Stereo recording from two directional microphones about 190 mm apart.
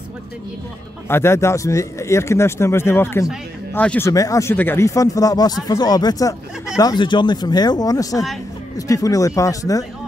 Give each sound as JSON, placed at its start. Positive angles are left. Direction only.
{"t": 1.0, "sound": "speech", "side_deg": 15}